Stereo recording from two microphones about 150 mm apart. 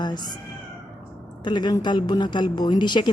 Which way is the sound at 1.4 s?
30° left (ahead or behind).